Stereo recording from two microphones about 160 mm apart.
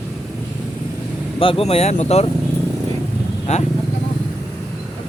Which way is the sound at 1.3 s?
35° left (ahead or behind).